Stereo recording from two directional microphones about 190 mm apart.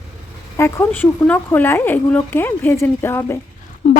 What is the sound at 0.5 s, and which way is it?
Speech, 10° left (ahead or behind).